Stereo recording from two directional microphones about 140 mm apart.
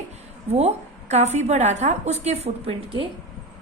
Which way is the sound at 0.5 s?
50° right (ahead or behind).